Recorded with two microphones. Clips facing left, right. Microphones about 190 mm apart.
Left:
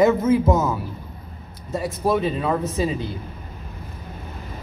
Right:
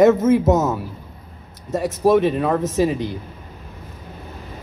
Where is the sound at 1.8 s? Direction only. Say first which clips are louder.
Right 6 dB; 90° right.